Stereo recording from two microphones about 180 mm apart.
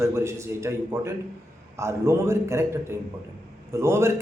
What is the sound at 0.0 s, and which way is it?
A man's voice, 15° right (ahead or behind).